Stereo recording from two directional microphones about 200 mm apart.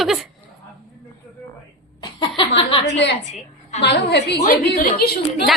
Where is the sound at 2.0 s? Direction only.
25° left (ahead or behind).